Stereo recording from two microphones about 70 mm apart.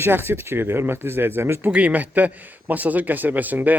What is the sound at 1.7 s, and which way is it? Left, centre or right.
A man's voice, right.